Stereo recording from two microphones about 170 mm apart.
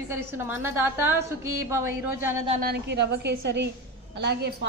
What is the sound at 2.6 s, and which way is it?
A woman's voice, 70° right (ahead or behind).